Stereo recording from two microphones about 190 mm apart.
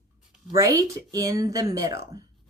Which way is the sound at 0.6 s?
15° right (ahead or behind).